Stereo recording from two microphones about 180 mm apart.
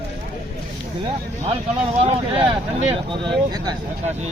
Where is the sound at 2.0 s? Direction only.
30° right (ahead or behind).